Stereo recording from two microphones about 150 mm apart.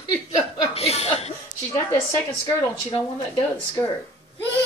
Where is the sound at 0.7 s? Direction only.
45° left (ahead or behind).